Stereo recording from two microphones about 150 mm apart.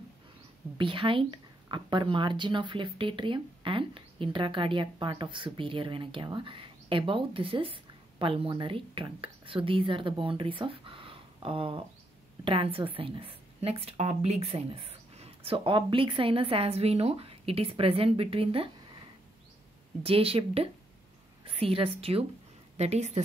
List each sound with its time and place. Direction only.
0.7 s speech: 35° right (ahead or behind)
20.0 s a woman's voice: 40° right (ahead or behind)